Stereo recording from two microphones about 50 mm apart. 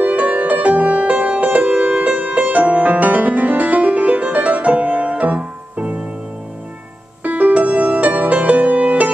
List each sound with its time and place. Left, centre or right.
0.0 s music: right
7.2 s music: right